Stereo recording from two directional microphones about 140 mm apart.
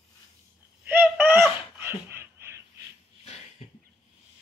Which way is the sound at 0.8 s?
10° right (ahead or behind).